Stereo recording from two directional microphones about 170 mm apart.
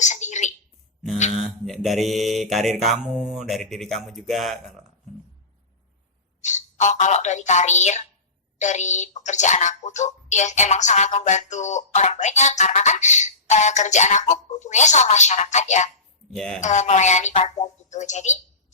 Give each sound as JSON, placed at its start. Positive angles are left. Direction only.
{"t": 0.0, "sound": "a sound", "side_deg": 45}
{"t": 1.5, "sound": "mantra", "side_deg": 0}
{"t": 6.4, "sound": "a woman's voice", "side_deg": 45}
{"t": 16.3, "sound": "mantra", "side_deg": 5}
{"t": 16.6, "sound": "speech", "side_deg": 45}